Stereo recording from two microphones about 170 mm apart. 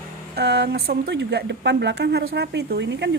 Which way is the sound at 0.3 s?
75° right (ahead or behind).